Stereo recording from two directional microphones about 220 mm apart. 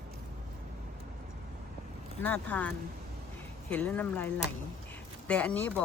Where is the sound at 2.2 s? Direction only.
10° left (ahead or behind).